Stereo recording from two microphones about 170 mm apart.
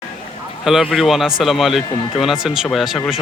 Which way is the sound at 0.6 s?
Centre (ahead or behind).